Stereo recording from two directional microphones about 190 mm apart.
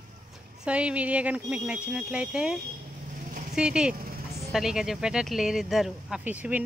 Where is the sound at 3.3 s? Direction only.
45° right (ahead or behind).